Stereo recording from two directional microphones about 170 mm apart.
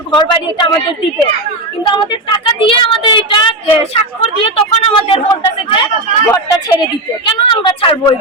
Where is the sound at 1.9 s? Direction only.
25° left (ahead or behind).